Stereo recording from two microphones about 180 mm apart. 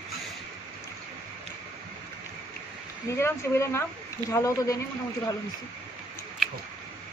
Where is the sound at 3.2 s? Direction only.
15° left (ahead or behind).